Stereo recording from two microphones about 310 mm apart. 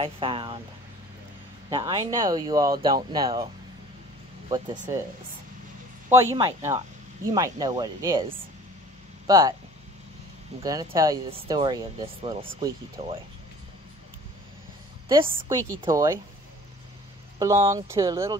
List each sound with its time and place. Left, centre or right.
0.0 s speech: centre
1.7 s speech: centre
4.5 s speech: right
6.0 s speech: centre
10.6 s speech: centre
15.4 s speech: centre
17.4 s speech: centre